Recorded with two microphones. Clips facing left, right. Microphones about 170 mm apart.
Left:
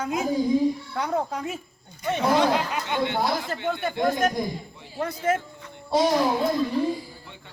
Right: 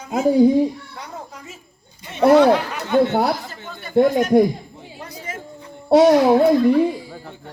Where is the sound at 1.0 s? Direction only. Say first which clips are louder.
Left 9 dB; 65° left (ahead or behind).